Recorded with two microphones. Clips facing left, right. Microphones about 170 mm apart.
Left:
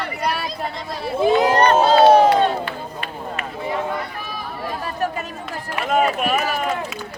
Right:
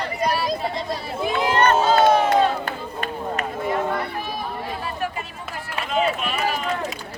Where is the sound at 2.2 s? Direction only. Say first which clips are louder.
Left 2 dB; 45° right (ahead or behind).